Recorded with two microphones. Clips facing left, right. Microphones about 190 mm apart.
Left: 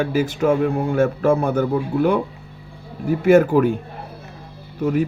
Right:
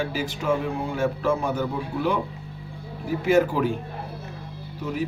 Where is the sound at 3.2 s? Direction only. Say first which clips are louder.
Left 7 dB; 50° left (ahead or behind).